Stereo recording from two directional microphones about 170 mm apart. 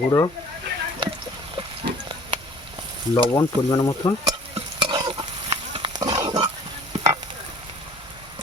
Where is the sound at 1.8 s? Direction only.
30° right (ahead or behind).